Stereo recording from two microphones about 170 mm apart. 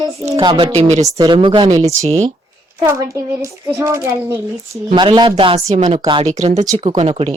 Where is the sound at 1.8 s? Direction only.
40° right (ahead or behind).